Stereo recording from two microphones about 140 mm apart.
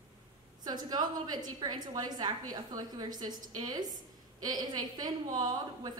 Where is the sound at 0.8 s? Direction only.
30° right (ahead or behind).